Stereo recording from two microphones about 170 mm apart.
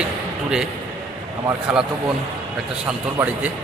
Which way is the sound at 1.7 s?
5° right (ahead or behind).